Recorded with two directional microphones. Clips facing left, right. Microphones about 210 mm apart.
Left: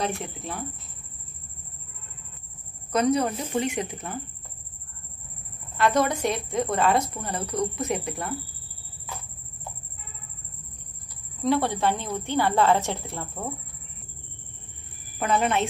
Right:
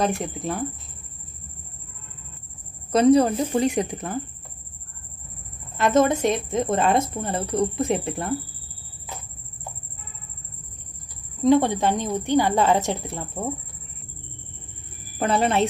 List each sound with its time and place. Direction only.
0.0 s speech: 45° right (ahead or behind)
2.9 s a woman's voice: 30° right (ahead or behind)
5.8 s speech: 20° right (ahead or behind)
11.4 s a woman's voice: 20° right (ahead or behind)
15.1 s a woman's voice: 35° right (ahead or behind)